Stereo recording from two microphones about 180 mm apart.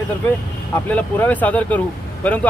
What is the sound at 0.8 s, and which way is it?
Speech, 10° left (ahead or behind).